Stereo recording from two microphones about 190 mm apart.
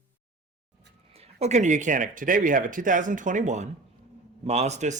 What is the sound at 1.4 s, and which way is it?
Speech, 35° right (ahead or behind).